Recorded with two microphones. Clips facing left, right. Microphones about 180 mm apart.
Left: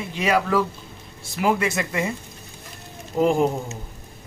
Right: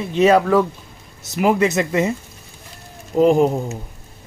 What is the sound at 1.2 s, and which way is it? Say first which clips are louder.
Speech: right 5 dB; 20° right (ahead or behind).